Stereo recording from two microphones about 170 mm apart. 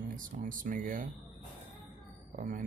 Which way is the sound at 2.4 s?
55° right (ahead or behind).